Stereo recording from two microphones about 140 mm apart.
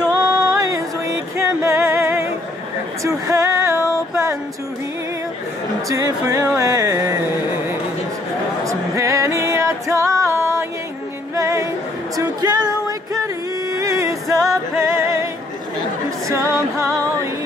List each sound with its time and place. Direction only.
0.0 s music: 10° right (ahead or behind)
0.6 s music: 25° right (ahead or behind)
3.0 s a sound: 20° right (ahead or behind)
5.9 s a sound: 25° right (ahead or behind)
8.6 s music: 20° right (ahead or behind)
13.7 s music: 25° right (ahead or behind)